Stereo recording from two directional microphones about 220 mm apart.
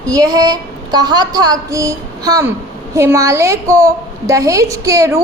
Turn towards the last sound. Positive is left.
turn(degrees=-15)  # may be behind; listen again after turning